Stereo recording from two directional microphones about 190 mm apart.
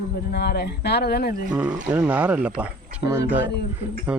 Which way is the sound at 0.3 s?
60° left (ahead or behind).